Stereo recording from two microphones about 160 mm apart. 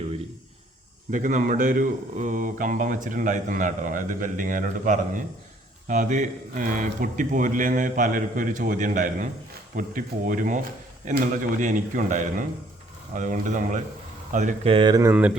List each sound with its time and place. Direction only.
1.1 s speech: 55° right (ahead or behind)
11.6 s a man's voice: 55° right (ahead or behind); by 15.1 s 25° right (ahead or behind)